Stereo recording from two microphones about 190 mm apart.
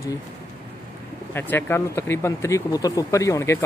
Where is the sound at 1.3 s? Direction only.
10° left (ahead or behind).